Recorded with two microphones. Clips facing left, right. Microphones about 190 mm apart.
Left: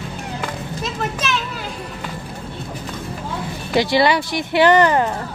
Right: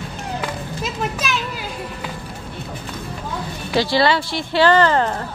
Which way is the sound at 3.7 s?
20° left (ahead or behind).